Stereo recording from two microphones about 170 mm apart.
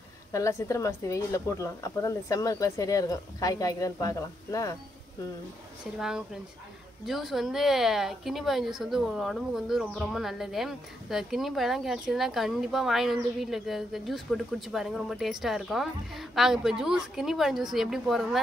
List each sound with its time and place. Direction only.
0.3 s speech: 20° left (ahead or behind)
5.9 s speech: 5° right (ahead or behind)